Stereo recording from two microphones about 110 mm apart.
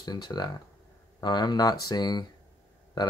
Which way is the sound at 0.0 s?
40° left (ahead or behind).